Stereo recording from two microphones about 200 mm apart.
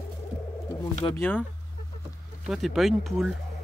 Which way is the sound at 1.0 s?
20° left (ahead or behind).